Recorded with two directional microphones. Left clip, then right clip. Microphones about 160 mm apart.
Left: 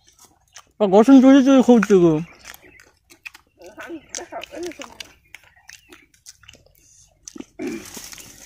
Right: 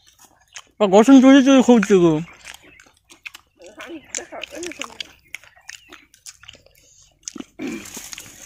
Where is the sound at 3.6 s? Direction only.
60° right (ahead or behind).